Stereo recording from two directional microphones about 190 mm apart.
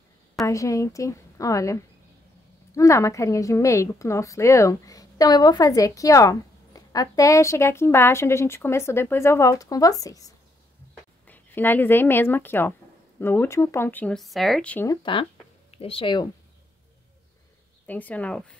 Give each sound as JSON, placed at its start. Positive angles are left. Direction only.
{"t": 0.5, "sound": "a woman's voice", "side_deg": 15}
{"t": 14.9, "sound": "speech", "side_deg": 25}
{"t": 17.8, "sound": "a woman's voice", "side_deg": 10}